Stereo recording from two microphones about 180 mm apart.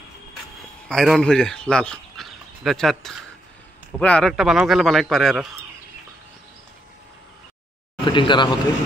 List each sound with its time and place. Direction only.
0.8 s speech: centre (ahead or behind)
8.0 s speech: 25° left (ahead or behind)